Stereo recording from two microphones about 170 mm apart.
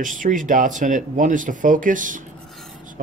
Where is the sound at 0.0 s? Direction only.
50° right (ahead or behind).